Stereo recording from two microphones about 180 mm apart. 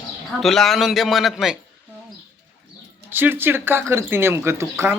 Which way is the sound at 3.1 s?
10° right (ahead or behind).